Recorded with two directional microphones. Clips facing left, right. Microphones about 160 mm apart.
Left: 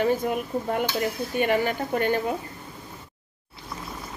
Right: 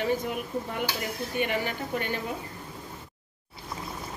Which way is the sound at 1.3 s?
50° left (ahead or behind).